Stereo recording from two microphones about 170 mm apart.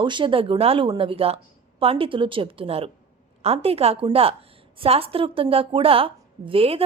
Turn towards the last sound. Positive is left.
turn(degrees=-35)  # may be behind; listen again after turning